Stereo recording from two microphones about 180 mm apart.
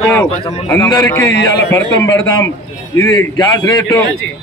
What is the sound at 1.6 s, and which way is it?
Speech, 90° left.